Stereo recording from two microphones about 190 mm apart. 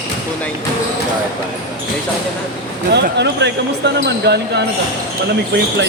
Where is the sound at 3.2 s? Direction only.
65° right (ahead or behind).